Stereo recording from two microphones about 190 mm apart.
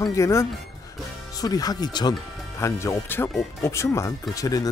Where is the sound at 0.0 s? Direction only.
15° left (ahead or behind).